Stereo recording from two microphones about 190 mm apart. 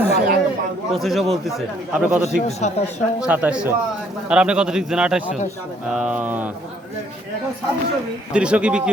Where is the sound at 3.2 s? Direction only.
5° right (ahead or behind).